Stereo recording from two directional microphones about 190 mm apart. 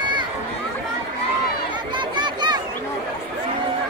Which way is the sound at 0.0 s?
25° right (ahead or behind).